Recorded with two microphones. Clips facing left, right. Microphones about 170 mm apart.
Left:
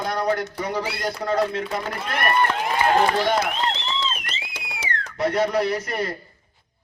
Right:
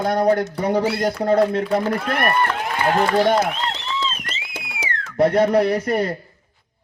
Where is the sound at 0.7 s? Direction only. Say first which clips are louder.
Right 10 dB; 50° right (ahead or behind).